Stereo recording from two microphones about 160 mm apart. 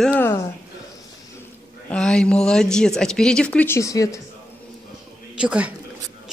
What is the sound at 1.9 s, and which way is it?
A woman's voice, 5° left (ahead or behind).